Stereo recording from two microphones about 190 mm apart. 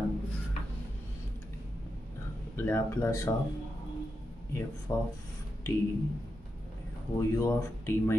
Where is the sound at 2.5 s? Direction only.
15° left (ahead or behind).